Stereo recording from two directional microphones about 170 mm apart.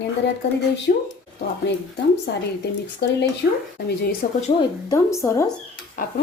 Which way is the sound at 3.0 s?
70° left (ahead or behind).